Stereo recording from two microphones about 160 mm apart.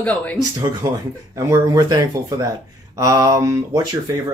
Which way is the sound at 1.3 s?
20° right (ahead or behind).